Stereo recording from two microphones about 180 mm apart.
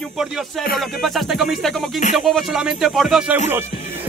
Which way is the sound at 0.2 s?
Centre (ahead or behind).